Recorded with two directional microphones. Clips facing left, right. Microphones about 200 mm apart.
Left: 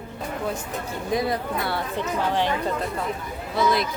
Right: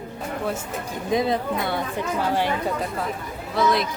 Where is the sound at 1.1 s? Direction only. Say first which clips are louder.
Right 3 dB; 20° right (ahead or behind).